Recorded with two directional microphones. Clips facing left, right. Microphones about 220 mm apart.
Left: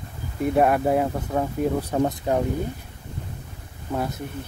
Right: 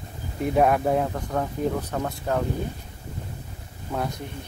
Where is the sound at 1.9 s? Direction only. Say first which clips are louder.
Left 4 dB; 20° left (ahead or behind).